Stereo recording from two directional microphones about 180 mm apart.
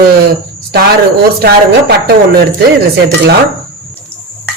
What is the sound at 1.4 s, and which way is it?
Speech, 60° right (ahead or behind).